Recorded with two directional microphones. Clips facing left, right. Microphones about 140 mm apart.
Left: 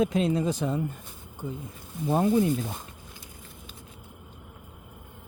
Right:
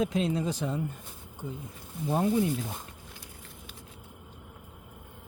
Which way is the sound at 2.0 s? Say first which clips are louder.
Left 3 dB; 55° left (ahead or behind).